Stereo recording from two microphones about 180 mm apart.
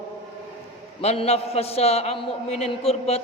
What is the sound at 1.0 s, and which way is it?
A man's voice, 35° left (ahead or behind).